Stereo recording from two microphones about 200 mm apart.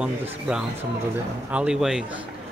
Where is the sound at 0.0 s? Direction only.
5° right (ahead or behind).